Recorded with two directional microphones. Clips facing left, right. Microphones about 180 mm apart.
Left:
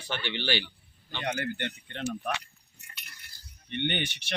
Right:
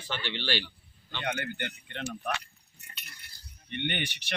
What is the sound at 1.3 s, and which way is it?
Speech, 35° left (ahead or behind).